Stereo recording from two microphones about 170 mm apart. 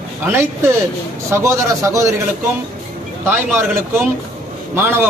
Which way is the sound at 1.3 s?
15° right (ahead or behind).